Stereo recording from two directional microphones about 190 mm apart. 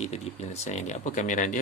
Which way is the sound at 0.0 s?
35° left (ahead or behind).